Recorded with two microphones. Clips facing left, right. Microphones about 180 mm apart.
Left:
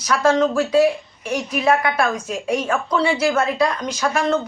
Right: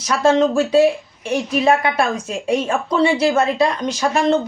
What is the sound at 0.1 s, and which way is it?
Speech, 25° right (ahead or behind).